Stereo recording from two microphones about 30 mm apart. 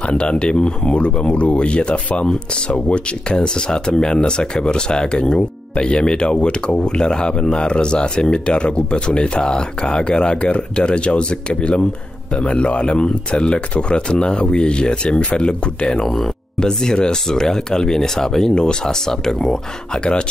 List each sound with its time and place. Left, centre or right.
0.0 s speech: left
10.4 s speech: left
10.9 s speech: left